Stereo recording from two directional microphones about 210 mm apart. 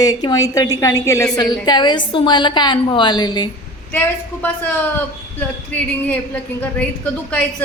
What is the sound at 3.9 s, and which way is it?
A woman's voice, 10° left (ahead or behind).